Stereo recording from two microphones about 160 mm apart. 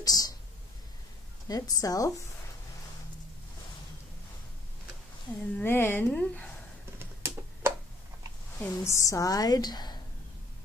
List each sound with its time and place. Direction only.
0.0 s a sound: 25° left (ahead or behind)
1.5 s a woman's voice: 20° left (ahead or behind)
5.6 s a woman's voice: 15° left (ahead or behind)
7.0 s typing: 15° right (ahead or behind)
8.6 s a woman's voice: 20° left (ahead or behind)